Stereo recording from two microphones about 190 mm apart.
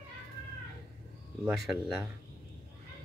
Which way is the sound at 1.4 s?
Centre (ahead or behind).